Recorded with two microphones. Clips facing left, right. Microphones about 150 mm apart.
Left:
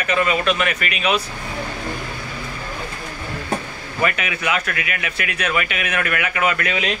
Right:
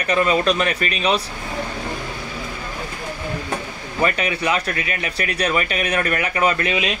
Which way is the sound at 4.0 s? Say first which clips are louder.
Right 2 dB; 35° right (ahead or behind).